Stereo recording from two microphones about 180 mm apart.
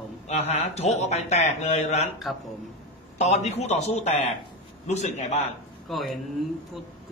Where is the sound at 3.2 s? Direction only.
40° left (ahead or behind).